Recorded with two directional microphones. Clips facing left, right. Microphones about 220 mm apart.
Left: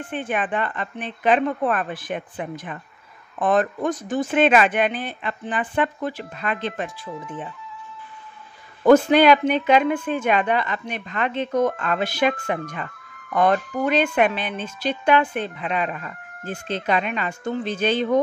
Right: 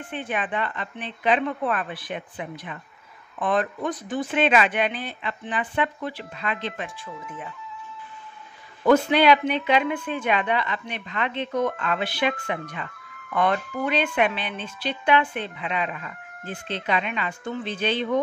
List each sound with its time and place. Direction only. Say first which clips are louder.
0.1 s speech: left 3 dB; 50° left (ahead or behind)
8.8 s speech: left 4 dB; 45° left (ahead or behind)